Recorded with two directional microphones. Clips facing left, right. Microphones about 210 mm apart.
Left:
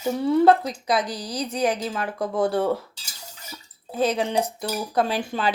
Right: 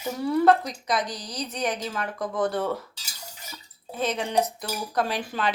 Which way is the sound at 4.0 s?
30° left (ahead or behind).